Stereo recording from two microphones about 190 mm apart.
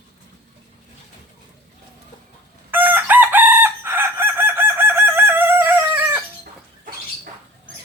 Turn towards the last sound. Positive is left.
turn(degrees=-10)  # may be behind; listen again after turning